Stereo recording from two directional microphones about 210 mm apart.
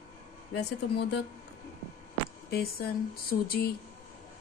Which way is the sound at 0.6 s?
55° left (ahead or behind).